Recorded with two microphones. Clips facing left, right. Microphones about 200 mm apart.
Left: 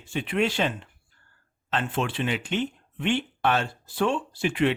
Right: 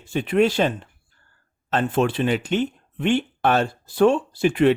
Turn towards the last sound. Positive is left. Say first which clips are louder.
# right 7 dB
turn(degrees=-40)  # may be behind; listen again after turning